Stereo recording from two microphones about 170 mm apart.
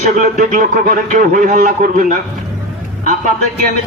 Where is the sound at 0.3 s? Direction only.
55° right (ahead or behind).